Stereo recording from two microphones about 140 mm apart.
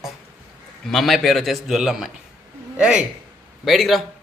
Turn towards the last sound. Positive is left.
turn(degrees=0)  # may be behind; listen again after turning